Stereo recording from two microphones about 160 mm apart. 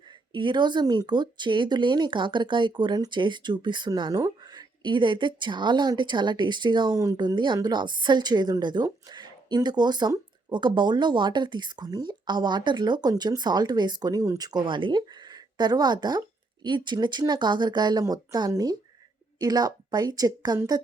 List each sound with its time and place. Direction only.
0.3 s speech: 30° right (ahead or behind)